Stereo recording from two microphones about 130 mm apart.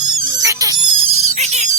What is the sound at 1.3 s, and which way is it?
Music, 60° right (ahead or behind).